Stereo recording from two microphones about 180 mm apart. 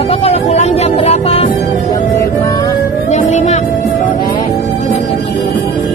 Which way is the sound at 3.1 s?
40° left (ahead or behind).